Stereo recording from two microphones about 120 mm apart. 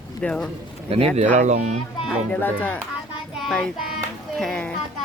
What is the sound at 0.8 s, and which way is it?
Speech, 55° right (ahead or behind).